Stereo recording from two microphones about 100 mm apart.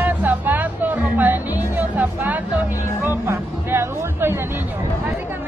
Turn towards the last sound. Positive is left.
turn(degrees=-25)  # may be behind; listen again after turning